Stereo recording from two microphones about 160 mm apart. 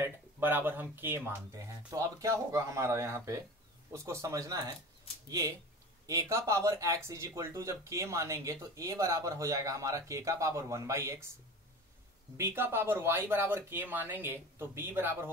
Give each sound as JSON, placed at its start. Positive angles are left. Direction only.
{"t": 0.0, "sound": "speech", "side_deg": -15}
{"t": 6.0, "sound": "speech", "side_deg": -20}
{"t": 12.4, "sound": "speech", "side_deg": -15}